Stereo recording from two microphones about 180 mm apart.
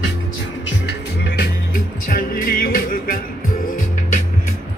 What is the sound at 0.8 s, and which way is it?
Music, 60° left (ahead or behind).